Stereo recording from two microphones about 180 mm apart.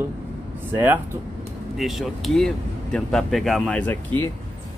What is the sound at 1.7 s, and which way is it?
Speech, centre (ahead or behind).